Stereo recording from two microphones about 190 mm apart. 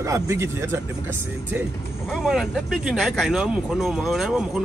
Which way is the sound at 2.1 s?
Centre (ahead or behind).